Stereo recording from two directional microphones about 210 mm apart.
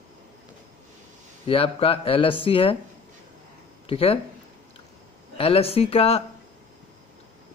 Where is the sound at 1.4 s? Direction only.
25° left (ahead or behind).